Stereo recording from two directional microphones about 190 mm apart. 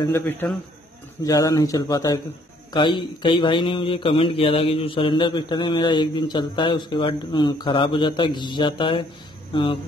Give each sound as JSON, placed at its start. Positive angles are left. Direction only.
{"t": 0.0, "sound": "a man's voice", "side_deg": 10}